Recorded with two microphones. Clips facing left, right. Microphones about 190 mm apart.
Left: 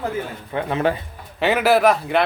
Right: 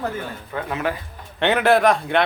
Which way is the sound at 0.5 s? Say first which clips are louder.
Left 5 dB; 30° left (ahead or behind).